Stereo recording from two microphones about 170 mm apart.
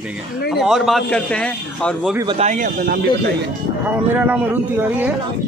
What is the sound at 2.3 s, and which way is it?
Speech, 40° right (ahead or behind).